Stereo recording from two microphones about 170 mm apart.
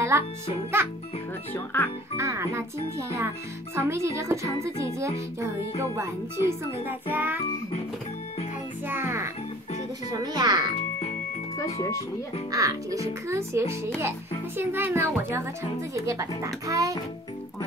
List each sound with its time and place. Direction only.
0.1 s a child's voice: 15° right (ahead or behind)
1.5 s speech: 10° left (ahead or behind)
2.1 s a child's voice: 15° right (ahead or behind)
8.8 s music: 15° right (ahead or behind)
10.1 s a child's voice: 25° right (ahead or behind)
12.4 s a child's voice: 20° right (ahead or behind)